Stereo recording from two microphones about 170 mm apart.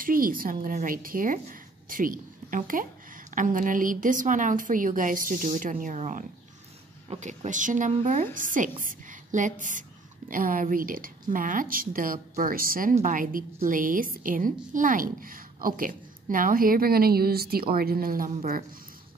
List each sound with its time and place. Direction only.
0.0 s a woman's voice: 55° right (ahead or behind)